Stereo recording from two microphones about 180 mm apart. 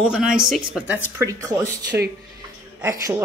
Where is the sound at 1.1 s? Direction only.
15° right (ahead or behind).